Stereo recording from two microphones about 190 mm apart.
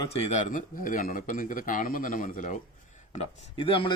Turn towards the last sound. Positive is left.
turn(degrees=30)  # may be behind; listen again after turning